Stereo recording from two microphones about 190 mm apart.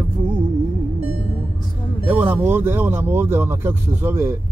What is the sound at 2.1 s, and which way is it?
Speech, 10° right (ahead or behind).